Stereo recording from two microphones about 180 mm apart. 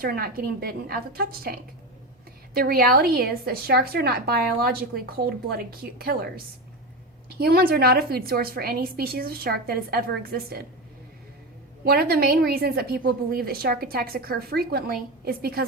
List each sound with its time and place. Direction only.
0.0 s a woman's voice: 55° right (ahead or behind)
11.9 s a woman's voice: 60° right (ahead or behind)